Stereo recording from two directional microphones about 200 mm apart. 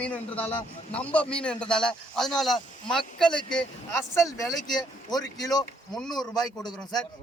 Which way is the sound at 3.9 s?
15° left (ahead or behind).